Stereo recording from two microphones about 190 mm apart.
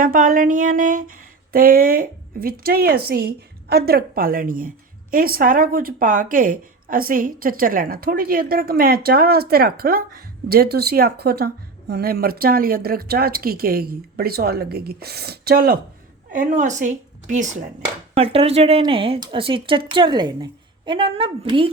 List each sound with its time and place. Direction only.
0.0 s a woman's voice: 45° right (ahead or behind)
16.3 s a woman's voice: 40° right (ahead or behind)
18.1 s speech: 30° right (ahead or behind)